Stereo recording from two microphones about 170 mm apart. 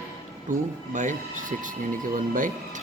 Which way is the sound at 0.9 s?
50° right (ahead or behind).